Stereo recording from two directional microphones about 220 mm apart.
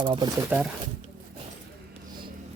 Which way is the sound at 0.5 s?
5° right (ahead or behind).